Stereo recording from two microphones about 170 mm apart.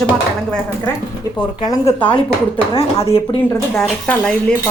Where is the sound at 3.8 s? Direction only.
5° left (ahead or behind).